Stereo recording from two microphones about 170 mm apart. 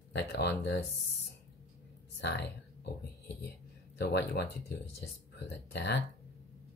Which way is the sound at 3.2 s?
80° left.